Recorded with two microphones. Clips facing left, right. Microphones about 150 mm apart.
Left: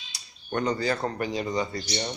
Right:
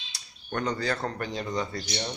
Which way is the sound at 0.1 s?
5° left (ahead or behind).